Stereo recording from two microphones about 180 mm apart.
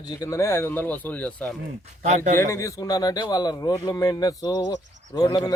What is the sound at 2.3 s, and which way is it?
Speech, 15° left (ahead or behind).